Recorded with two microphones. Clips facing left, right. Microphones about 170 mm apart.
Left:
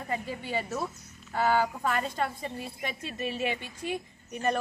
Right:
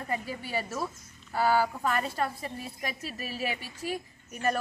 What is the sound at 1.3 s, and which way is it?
Speech, 5° right (ahead or behind).